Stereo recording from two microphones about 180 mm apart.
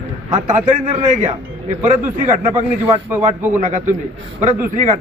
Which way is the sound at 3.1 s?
10° right (ahead or behind).